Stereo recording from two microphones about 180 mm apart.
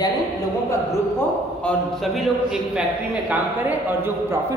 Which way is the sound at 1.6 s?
Centre (ahead or behind).